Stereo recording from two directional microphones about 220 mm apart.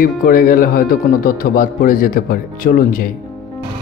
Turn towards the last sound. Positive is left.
turn(degrees=40)  # may be behind; listen again after turning